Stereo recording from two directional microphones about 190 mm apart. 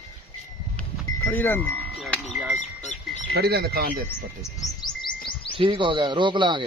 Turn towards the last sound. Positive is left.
turn(degrees=-25)  # may be behind; listen again after turning